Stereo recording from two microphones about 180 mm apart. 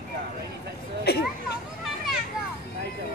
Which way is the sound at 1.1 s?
65° left (ahead or behind).